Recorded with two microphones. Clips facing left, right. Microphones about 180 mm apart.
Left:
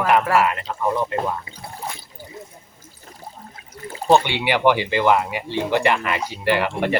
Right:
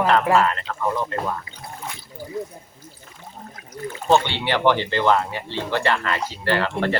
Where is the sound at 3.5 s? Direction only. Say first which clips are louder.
Right 3 dB; 30° left (ahead or behind).